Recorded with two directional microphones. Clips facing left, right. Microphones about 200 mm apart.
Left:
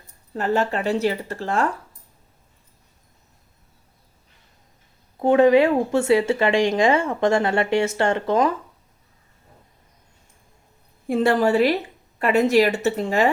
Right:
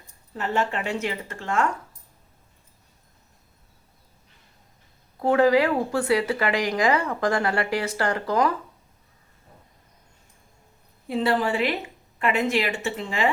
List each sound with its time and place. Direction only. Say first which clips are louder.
0.3 s speech: left 4 dB; 40° left (ahead or behind)
5.2 s speech: left 4 dB; 25° left (ahead or behind)
11.1 s a woman's voice: left 5 dB; 45° left (ahead or behind)